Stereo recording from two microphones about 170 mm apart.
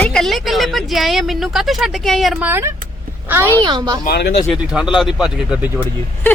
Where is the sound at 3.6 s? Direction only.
25° right (ahead or behind).